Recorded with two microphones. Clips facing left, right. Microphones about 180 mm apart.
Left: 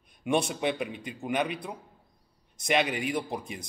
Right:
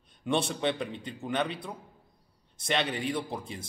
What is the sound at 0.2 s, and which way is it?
A man's voice, 15° left (ahead or behind).